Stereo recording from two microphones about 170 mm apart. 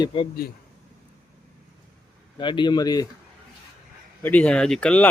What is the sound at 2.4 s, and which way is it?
Speech, 25° left (ahead or behind).